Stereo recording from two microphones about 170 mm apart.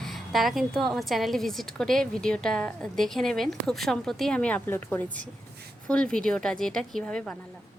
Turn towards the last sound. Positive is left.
turn(degrees=5)  # may be behind; listen again after turning